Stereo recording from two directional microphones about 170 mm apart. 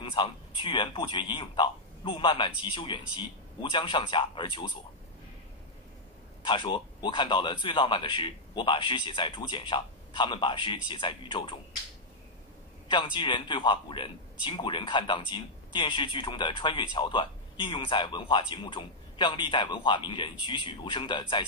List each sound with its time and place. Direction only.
0.0 s a man's voice: 30° left (ahead or behind)
6.4 s a man's voice: 30° left (ahead or behind)
12.8 s a man's voice: 30° left (ahead or behind)